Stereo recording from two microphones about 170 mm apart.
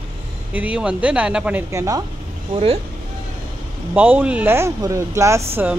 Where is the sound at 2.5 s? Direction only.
35° right (ahead or behind).